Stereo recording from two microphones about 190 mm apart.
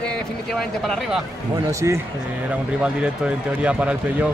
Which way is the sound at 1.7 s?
15° right (ahead or behind).